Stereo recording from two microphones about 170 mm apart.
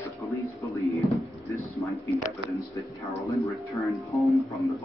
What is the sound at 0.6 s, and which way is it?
Music, 20° left (ahead or behind).